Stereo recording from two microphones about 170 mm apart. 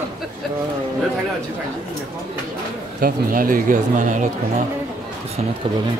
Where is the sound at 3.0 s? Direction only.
55° right (ahead or behind).